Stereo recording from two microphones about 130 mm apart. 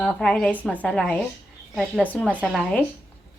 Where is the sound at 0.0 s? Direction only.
5° left (ahead or behind).